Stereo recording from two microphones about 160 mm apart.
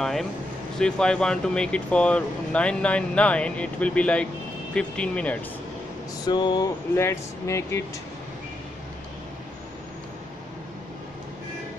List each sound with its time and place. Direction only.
0.0 s speech: centre (ahead or behind)
6.2 s a sound: 25° left (ahead or behind)
7.0 s speech: 15° left (ahead or behind)